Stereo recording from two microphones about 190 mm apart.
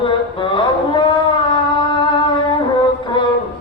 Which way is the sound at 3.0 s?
25° left (ahead or behind).